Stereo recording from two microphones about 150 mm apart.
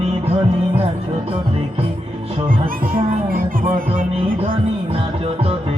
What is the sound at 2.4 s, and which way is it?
Music, 70° right (ahead or behind).